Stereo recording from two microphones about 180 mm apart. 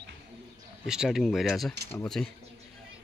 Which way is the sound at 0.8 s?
5° right (ahead or behind).